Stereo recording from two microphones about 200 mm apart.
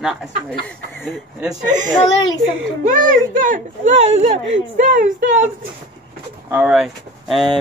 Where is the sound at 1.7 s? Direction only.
40° right (ahead or behind).